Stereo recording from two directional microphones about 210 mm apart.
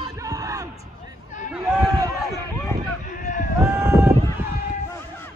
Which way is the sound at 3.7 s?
15° right (ahead or behind).